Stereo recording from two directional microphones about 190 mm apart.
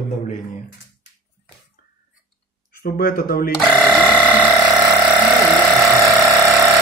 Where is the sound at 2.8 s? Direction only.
50° left (ahead or behind).